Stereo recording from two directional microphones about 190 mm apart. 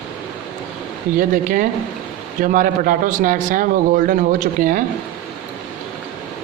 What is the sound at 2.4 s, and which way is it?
A man's voice, 45° right (ahead or behind).